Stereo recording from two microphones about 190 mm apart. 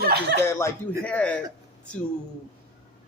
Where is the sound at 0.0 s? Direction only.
60° right (ahead or behind).